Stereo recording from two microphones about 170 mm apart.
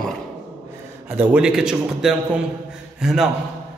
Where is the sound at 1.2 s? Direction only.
5° right (ahead or behind).